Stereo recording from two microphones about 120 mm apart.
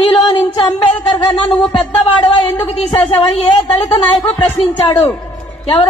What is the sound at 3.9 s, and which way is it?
Speech, 50° left (ahead or behind).